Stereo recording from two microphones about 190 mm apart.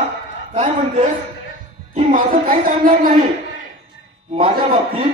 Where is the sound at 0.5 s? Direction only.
35° right (ahead or behind).